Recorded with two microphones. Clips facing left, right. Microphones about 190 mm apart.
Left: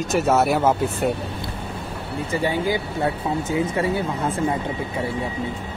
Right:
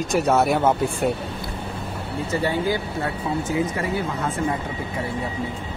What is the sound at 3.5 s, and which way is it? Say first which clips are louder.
Speech: left 3 dB; 25° left (ahead or behind).